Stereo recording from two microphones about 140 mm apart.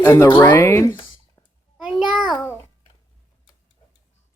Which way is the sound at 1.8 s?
5° right (ahead or behind).